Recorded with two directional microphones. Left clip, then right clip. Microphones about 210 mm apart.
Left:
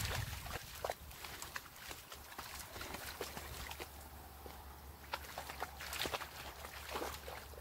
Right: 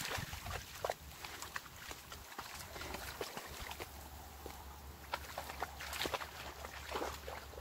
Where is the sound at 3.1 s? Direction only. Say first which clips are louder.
Right 1 dB; 25° left (ahead or behind).